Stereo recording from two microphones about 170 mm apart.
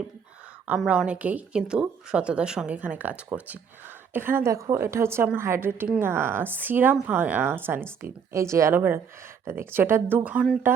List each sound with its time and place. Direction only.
0.7 s a woman's voice: 5° right (ahead or behind)